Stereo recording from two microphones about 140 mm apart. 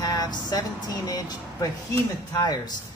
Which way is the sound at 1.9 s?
25° left (ahead or behind).